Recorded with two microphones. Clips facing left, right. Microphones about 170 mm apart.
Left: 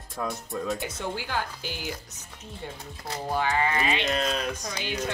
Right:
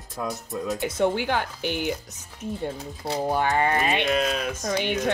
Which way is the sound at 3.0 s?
55° right (ahead or behind).